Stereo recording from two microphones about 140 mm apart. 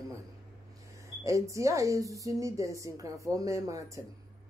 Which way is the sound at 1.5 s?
20° right (ahead or behind).